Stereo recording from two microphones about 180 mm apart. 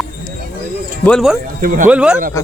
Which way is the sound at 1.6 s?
50° right (ahead or behind).